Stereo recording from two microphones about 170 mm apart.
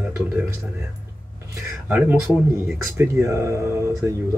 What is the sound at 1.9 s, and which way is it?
Speech, 10° right (ahead or behind).